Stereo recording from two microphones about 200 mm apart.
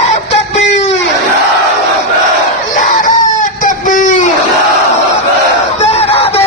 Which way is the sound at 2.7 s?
40° left (ahead or behind).